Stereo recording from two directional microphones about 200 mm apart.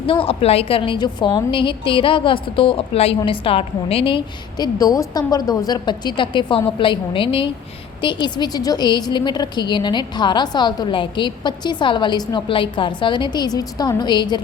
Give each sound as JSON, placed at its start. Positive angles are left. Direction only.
{"t": 0.0, "sound": "a woman's voice", "side_deg": 25}